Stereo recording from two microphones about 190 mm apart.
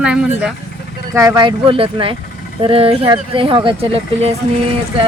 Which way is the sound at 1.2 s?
20° right (ahead or behind).